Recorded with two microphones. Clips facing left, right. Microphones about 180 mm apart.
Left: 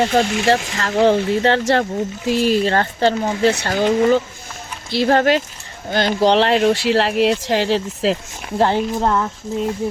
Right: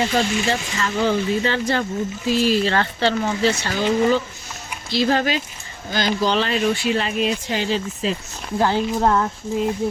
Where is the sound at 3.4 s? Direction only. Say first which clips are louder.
Left 5 dB; 55° left (ahead or behind).